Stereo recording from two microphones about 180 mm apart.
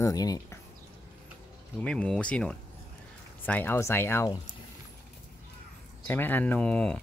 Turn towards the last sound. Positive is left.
turn(degrees=5)  # may be behind; listen again after turning